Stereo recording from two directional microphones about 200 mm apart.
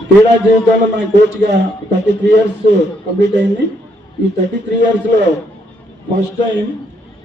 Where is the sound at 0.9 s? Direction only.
55° right (ahead or behind).